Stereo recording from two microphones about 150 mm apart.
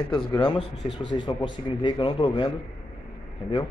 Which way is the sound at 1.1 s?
35° left (ahead or behind).